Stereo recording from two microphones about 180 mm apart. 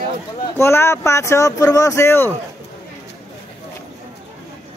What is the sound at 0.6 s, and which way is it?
Speech, 15° left (ahead or behind).